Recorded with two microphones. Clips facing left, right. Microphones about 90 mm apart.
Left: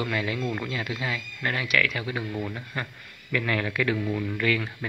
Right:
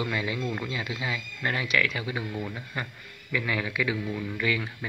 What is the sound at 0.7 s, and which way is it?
Speech, 20° right (ahead or behind).